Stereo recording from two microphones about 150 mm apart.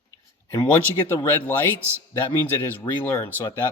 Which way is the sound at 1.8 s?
15° right (ahead or behind).